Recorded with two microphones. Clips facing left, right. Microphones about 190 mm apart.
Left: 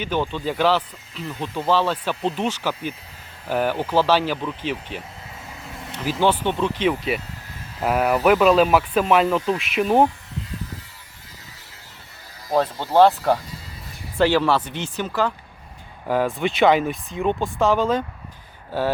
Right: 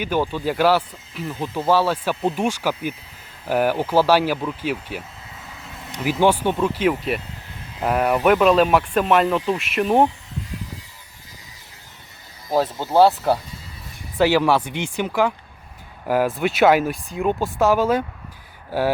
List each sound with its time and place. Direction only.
0.0 s speech: 10° right (ahead or behind)
12.5 s speech: centre (ahead or behind)